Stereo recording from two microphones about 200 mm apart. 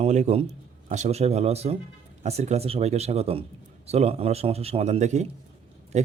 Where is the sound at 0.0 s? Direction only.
35° right (ahead or behind).